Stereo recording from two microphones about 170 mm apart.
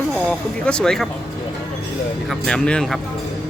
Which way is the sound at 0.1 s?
5° left (ahead or behind).